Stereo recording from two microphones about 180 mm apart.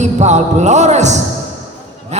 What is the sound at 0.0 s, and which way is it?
Music, 40° right (ahead or behind).